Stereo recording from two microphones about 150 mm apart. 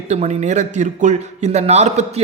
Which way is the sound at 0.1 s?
50° right (ahead or behind).